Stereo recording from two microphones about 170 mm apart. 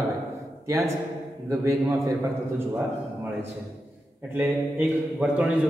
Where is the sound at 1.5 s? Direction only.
15° right (ahead or behind).